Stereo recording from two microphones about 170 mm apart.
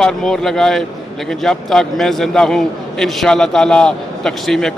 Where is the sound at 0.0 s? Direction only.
5° left (ahead or behind).